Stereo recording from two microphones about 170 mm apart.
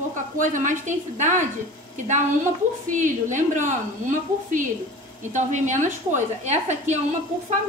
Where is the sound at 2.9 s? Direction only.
50° right (ahead or behind).